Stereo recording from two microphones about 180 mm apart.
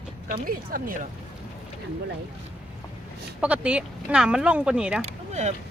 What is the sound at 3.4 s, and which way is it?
Speech, 5° right (ahead or behind).